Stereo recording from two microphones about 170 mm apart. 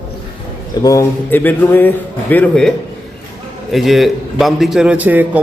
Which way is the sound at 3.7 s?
Centre (ahead or behind).